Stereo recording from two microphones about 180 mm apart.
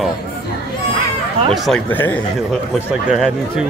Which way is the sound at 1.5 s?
5° left (ahead or behind).